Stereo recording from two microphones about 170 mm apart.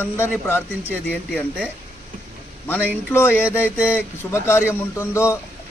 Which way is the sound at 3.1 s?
15° left (ahead or behind).